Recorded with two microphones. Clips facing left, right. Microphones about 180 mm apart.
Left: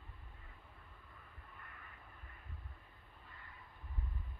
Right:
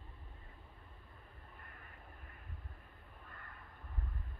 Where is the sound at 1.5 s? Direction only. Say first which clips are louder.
Left 2 dB; 45° right (ahead or behind).